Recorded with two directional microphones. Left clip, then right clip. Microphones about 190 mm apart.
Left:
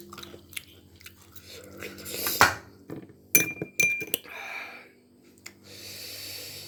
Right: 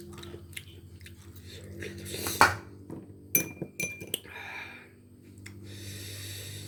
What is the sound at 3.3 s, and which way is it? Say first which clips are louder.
Glass: left 8 dB; 25° left (ahead or behind).